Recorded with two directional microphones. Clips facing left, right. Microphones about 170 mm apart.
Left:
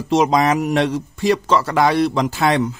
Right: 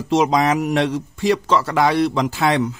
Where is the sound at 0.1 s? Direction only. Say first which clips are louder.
Left 1 dB; 40° left (ahead or behind).